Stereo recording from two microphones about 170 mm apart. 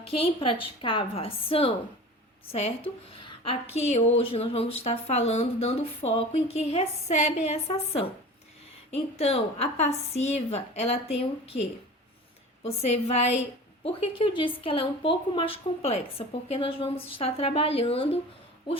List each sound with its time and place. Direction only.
0.0 s a woman's voice: 35° left (ahead or behind)
12.6 s a woman's voice: 40° left (ahead or behind)